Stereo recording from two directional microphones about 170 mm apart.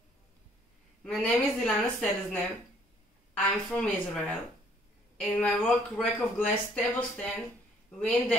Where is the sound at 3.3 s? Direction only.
10° left (ahead or behind).